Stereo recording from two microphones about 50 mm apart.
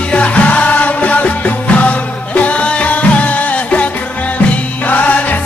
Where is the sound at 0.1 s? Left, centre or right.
Left.